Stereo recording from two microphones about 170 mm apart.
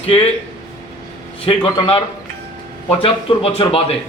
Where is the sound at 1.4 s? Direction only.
35° left (ahead or behind).